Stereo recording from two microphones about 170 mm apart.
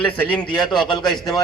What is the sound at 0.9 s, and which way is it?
Speech, 25° left (ahead or behind).